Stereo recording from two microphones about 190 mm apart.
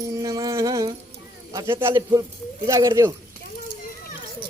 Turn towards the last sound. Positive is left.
turn(degrees=-15)  # may be behind; listen again after turning